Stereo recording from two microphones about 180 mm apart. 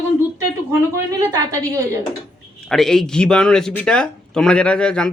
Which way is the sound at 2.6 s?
Centre (ahead or behind).